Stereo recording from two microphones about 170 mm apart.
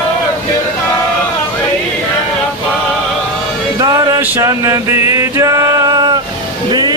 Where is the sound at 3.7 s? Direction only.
20° right (ahead or behind).